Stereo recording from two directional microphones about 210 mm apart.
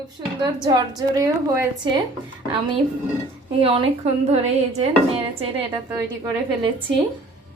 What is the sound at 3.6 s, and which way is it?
A woman's voice, 30° right (ahead or behind).